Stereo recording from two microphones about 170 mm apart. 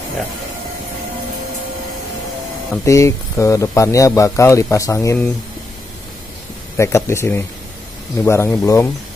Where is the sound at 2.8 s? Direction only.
20° left (ahead or behind).